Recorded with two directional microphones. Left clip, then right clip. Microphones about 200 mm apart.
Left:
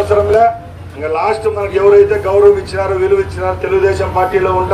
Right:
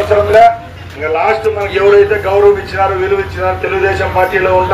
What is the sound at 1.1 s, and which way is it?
A man's voice, 55° left (ahead or behind).